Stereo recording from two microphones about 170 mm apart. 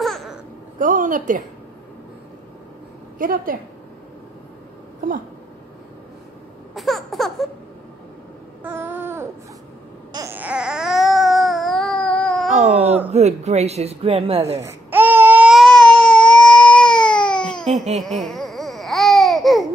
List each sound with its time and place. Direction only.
0.0 s babbling: centre (ahead or behind)
0.7 s a sound: 50° right (ahead or behind)
3.2 s a woman's voice: 55° right (ahead or behind)
6.7 s a sound: centre (ahead or behind)
8.6 s babbling: 10° right (ahead or behind)
10.1 s baby cry: 15° right (ahead or behind); by 12.5 s 5° left (ahead or behind)
13.1 s speech: 40° right (ahead or behind)
14.6 s baby cry: 15° right (ahead or behind); by 17.8 s centre (ahead or behind)
17.9 s babbling: centre (ahead or behind)